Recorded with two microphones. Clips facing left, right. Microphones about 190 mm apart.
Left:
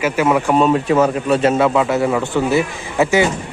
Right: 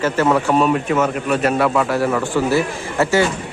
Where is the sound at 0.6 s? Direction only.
25° left (ahead or behind).